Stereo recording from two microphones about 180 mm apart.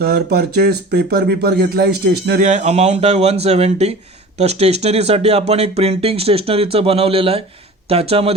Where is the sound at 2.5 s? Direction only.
40° right (ahead or behind).